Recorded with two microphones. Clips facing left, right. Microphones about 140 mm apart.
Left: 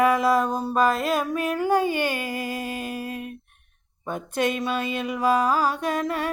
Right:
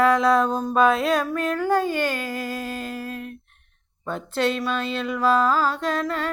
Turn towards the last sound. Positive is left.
turn(degrees=15)  # may be behind; listen again after turning